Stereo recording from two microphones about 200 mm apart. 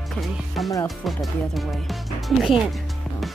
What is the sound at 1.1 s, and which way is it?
Speech, centre (ahead or behind).